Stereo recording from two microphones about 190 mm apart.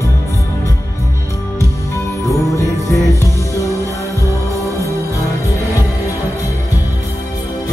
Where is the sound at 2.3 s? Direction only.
15° left (ahead or behind).